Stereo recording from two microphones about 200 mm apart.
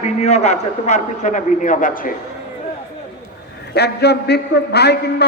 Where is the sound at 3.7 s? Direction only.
55° left (ahead or behind).